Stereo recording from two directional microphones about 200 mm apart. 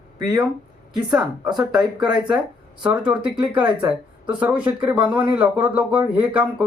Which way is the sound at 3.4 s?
25° right (ahead or behind).